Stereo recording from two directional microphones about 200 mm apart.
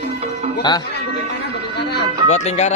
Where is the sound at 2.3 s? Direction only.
35° left (ahead or behind).